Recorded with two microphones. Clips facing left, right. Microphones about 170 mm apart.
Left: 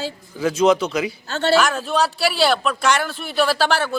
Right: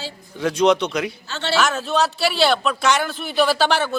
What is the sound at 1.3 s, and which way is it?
Speech, 45° left (ahead or behind).